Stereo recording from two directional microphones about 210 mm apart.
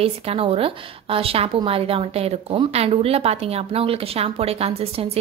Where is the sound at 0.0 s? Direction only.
25° right (ahead or behind).